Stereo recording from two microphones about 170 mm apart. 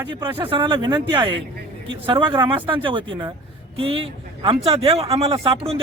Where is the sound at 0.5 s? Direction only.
30° right (ahead or behind).